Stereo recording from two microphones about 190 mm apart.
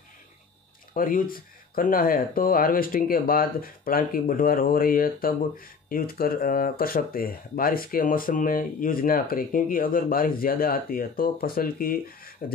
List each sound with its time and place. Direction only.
0.9 s speech: 50° left (ahead or behind)